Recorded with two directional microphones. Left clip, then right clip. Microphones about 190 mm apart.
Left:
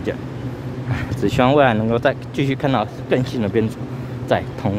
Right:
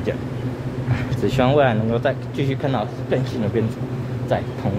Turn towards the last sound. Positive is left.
turn(degrees=35)  # may be behind; listen again after turning